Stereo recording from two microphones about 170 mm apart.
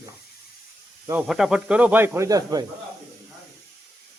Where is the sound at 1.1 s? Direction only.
5° right (ahead or behind); by 2.6 s 20° right (ahead or behind).